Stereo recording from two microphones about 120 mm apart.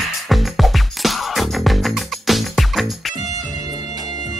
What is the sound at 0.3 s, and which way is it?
Music, centre (ahead or behind).